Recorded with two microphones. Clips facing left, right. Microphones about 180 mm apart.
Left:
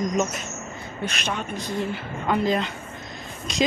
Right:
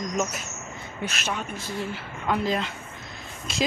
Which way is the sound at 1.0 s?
5° right (ahead or behind).